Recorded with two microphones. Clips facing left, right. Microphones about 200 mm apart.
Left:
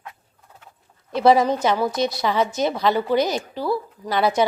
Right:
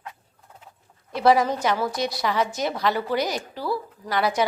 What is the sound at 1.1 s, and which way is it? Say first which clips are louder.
A woman's voice: left 3 dB; 25° left (ahead or behind).